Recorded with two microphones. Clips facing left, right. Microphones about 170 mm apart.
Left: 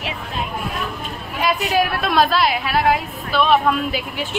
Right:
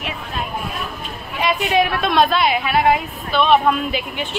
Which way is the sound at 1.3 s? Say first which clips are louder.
Right 1 dB; centre (ahead or behind).